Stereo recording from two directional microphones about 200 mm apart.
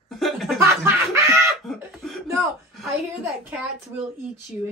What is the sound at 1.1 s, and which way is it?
Speech, 15° right (ahead or behind).